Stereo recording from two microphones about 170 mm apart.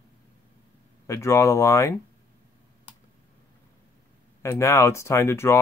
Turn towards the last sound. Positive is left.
turn(degrees=15)  # may be behind; listen again after turning